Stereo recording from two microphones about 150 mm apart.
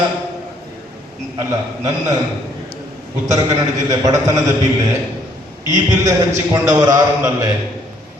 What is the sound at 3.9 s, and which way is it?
Speech, 20° right (ahead or behind).